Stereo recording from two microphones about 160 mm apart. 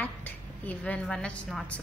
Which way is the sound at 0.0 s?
10° left (ahead or behind).